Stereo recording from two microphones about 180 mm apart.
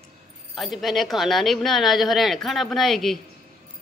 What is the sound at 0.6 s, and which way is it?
Speech, centre (ahead or behind).